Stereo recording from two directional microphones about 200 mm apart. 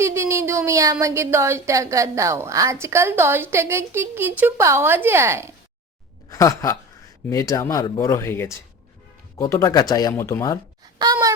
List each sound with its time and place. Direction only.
0.0 s speech: 15° right (ahead or behind)
6.3 s speech: 15° left (ahead or behind)
10.9 s speech: 20° right (ahead or behind)